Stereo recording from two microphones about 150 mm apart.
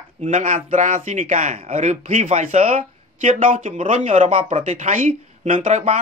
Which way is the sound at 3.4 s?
60° right (ahead or behind).